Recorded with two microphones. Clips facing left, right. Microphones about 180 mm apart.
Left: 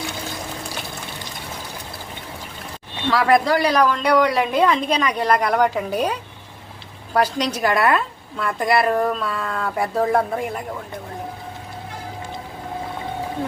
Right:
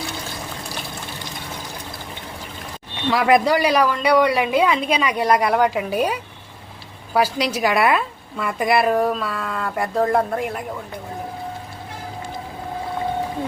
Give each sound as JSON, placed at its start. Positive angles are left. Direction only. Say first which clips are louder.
{"t": 3.1, "sound": "a woman's voice", "louder": "right 1 dB", "side_deg": -15}